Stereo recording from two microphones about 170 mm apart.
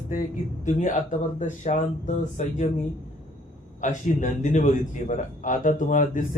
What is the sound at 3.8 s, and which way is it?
A man's voice, 45° left (ahead or behind).